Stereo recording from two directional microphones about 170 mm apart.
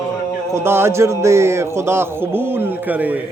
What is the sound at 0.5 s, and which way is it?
Speech, 15° right (ahead or behind).